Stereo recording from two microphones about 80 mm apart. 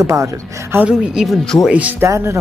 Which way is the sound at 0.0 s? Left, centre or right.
Right.